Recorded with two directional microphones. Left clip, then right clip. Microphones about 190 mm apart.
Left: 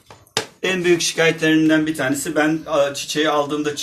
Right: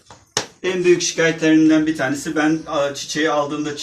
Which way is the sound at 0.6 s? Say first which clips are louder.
Right 1 dB; 60° left (ahead or behind).